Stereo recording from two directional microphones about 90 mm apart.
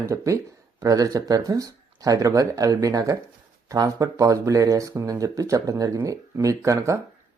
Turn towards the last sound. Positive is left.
turn(degrees=-35)  # may be behind; listen again after turning